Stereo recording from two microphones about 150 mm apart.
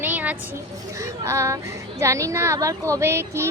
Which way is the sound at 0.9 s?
20° right (ahead or behind).